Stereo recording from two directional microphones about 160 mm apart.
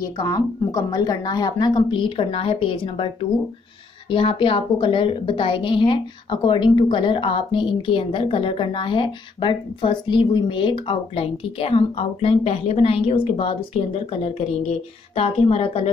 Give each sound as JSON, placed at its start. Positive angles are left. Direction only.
{"t": 0.2, "sound": "a woman's voice", "side_deg": 20}